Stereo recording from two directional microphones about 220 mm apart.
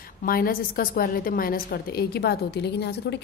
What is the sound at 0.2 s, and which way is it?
A woman's voice, 40° left (ahead or behind).